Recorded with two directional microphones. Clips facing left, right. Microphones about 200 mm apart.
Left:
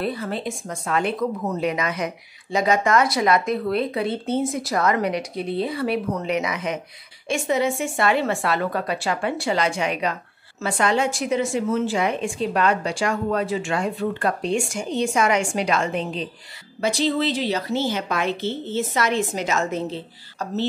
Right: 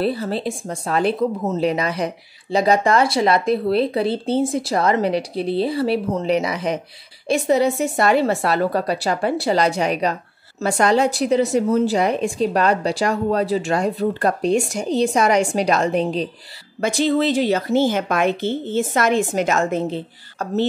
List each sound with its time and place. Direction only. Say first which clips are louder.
0.0 s a woman's voice: right 5 dB; 30° right (ahead or behind)
16.8 s a woman's voice: right 4 dB; 50° right (ahead or behind)